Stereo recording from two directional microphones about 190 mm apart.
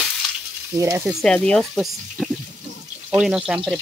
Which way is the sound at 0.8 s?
15° right (ahead or behind).